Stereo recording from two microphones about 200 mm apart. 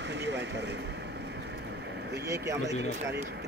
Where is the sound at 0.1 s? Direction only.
60° right (ahead or behind).